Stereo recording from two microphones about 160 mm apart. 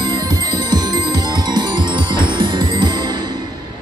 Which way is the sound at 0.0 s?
25° right (ahead or behind).